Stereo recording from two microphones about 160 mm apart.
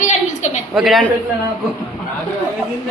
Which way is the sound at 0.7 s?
Centre (ahead or behind).